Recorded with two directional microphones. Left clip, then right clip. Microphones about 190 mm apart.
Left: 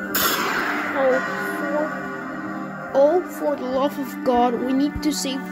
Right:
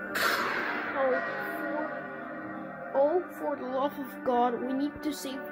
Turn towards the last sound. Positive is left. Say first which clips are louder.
# left 10 dB
turn(degrees=25)  # may be behind; listen again after turning